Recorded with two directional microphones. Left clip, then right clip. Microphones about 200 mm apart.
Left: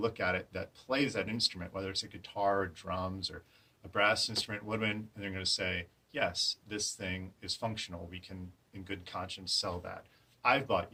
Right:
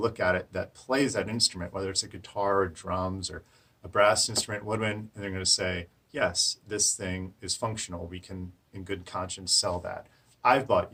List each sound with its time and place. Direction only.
0.1 s speech: 25° right (ahead or behind)